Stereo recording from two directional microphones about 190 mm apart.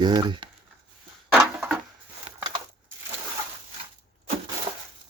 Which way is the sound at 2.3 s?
35° right (ahead or behind).